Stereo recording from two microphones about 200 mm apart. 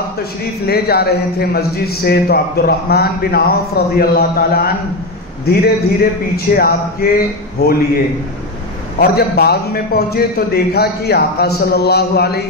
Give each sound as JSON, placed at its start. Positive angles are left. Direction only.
{"t": 0.7, "sound": "a man's voice", "side_deg": 50}
{"t": 9.0, "sound": "a man's voice", "side_deg": 50}